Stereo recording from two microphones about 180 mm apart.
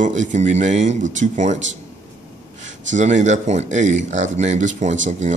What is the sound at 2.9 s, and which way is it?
Speech, 40° right (ahead or behind).